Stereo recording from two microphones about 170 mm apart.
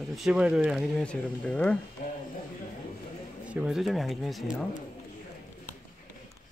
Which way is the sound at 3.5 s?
5° right (ahead or behind).